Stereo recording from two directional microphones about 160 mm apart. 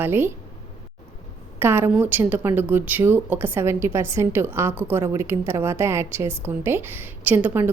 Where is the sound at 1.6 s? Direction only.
15° right (ahead or behind).